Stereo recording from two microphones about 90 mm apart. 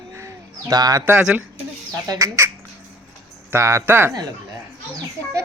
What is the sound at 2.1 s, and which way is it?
Speech, 35° right (ahead or behind).